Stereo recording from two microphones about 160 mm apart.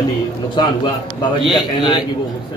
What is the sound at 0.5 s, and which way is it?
A man's voice, 25° left (ahead or behind).